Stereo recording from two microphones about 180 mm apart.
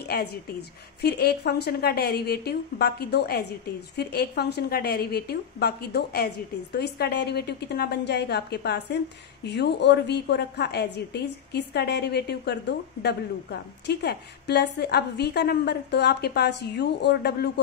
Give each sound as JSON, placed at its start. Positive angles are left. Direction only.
{"t": 0.0, "sound": "a woman's voice", "side_deg": 60}